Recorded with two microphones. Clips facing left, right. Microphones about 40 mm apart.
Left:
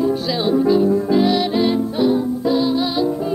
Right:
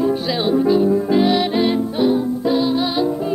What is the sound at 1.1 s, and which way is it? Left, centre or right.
Music, centre.